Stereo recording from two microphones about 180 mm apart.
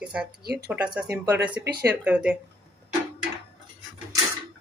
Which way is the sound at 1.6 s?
65° right (ahead or behind).